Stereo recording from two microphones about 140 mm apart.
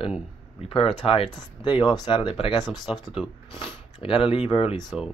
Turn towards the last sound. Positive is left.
turn(degrees=35)  # may be behind; listen again after turning